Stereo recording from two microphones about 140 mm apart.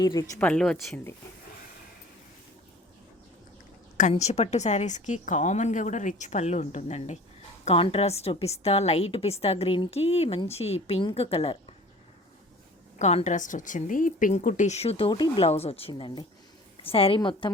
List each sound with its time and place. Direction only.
0.0 s speech: 25° left (ahead or behind)
0.3 s speech: 10° left (ahead or behind)
4.1 s a woman's voice: 50° left (ahead or behind)
7.6 s a woman's voice: 45° left (ahead or behind)
13.0 s a woman's voice: 55° left (ahead or behind)
15.1 s speech: 30° left (ahead or behind)
15.4 s a woman's voice: 45° left (ahead or behind)